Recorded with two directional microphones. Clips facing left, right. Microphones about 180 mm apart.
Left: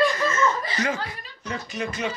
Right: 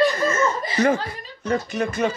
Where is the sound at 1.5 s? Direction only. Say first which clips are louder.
Right 7 dB; 50° right (ahead or behind).